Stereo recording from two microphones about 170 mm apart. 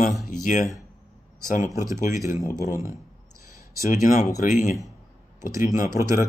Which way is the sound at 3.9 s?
50° left (ahead or behind).